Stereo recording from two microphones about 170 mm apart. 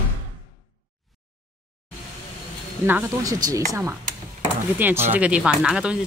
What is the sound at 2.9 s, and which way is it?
Speech, 15° right (ahead or behind).